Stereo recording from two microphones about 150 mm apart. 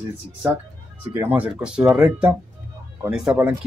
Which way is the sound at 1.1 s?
10° right (ahead or behind).